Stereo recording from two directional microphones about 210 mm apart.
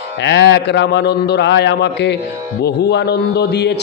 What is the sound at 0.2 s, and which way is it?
A man's voice, 55° left (ahead or behind).